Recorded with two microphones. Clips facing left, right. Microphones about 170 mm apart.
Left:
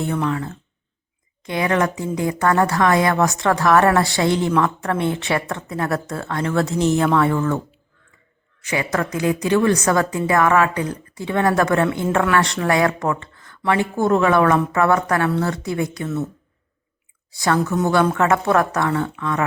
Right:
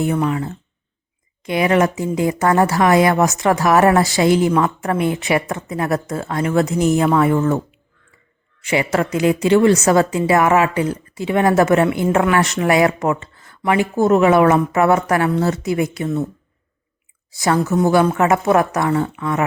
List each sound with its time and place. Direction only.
0.0 s speech: 10° right (ahead or behind)
5.5 s speech: 20° right (ahead or behind)
6.7 s speech: 5° right (ahead or behind)
7.3 s speech: 25° right (ahead or behind)
8.7 s speech: 20° right (ahead or behind)
17.4 s speech: 15° right (ahead or behind)